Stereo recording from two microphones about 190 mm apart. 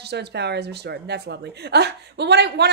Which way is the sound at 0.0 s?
60° right (ahead or behind).